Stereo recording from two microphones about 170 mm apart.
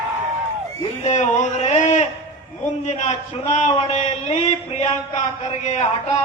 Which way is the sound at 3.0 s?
40° left (ahead or behind).